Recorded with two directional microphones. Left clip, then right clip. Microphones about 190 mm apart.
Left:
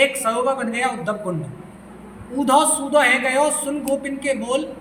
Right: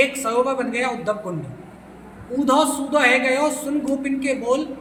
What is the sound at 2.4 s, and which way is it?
A man's voice, 15° right (ahead or behind).